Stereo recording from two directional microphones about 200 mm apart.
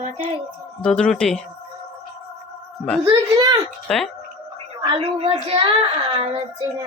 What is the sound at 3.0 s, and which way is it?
Speech, 20° right (ahead or behind).